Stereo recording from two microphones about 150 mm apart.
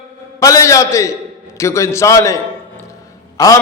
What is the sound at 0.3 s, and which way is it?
A man's voice, 20° left (ahead or behind).